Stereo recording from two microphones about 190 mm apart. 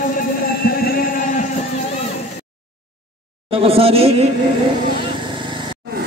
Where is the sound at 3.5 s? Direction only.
30° right (ahead or behind).